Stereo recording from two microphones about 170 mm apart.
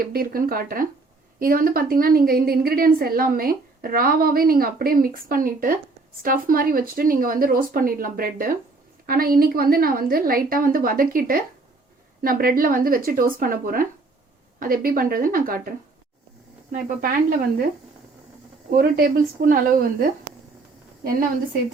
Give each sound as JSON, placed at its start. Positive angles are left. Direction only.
{"t": 0.0, "sound": "a woman's voice", "side_deg": -60}
{"t": 16.7, "sound": "a woman's voice", "side_deg": -55}
{"t": 18.7, "sound": "a woman's voice", "side_deg": -60}